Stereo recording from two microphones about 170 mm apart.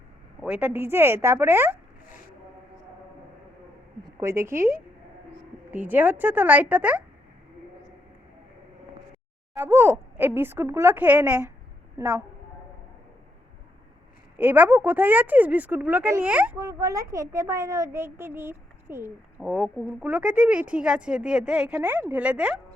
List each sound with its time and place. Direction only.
0.4 s a child's voice: 5° right (ahead or behind)
4.0 s a woman's voice: 15° right (ahead or behind)
5.7 s a child's voice: 10° right (ahead or behind)
9.6 s a child's voice: 15° right (ahead or behind)
14.3 s a child's voice: 10° right (ahead or behind)
16.6 s a child's voice: 20° right (ahead or behind)